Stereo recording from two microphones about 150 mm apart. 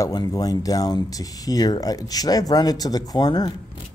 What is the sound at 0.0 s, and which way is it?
Speech, 25° left (ahead or behind).